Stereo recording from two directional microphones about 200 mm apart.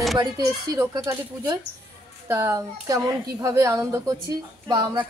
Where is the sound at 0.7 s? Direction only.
15° right (ahead or behind).